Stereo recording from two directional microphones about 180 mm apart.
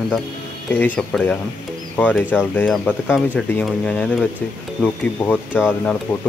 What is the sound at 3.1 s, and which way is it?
Speech, 5° right (ahead or behind).